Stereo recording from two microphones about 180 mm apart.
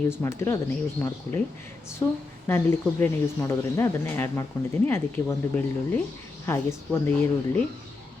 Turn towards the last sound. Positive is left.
turn(degrees=10)  # may be behind; listen again after turning